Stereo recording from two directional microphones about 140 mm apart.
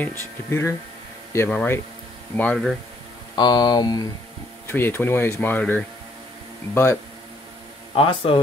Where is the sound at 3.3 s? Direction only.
30° left (ahead or behind).